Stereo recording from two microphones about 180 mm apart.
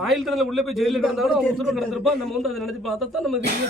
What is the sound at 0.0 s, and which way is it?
A man's voice, centre (ahead or behind).